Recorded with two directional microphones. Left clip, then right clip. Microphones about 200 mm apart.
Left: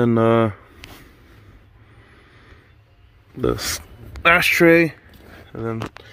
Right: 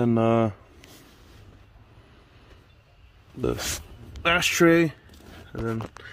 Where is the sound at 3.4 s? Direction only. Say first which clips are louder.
Left 6 dB; 10° left (ahead or behind).